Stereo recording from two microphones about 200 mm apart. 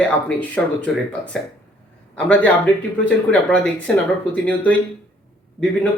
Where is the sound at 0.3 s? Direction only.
5° left (ahead or behind).